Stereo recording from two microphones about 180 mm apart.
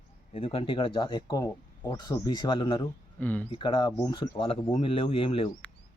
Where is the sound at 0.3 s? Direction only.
30° left (ahead or behind).